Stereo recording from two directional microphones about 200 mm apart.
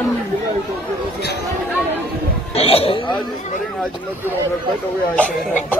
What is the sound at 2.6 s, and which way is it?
Speech, 30° left (ahead or behind).